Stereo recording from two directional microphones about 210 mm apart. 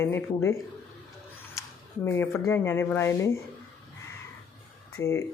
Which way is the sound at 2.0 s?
10° left (ahead or behind).